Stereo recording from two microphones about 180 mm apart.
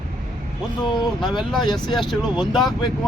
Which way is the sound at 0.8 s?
25° left (ahead or behind).